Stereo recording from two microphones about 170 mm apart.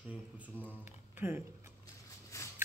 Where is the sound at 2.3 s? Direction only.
20° left (ahead or behind).